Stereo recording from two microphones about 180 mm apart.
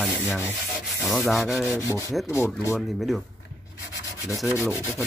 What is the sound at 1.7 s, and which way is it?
Speech, 15° left (ahead or behind).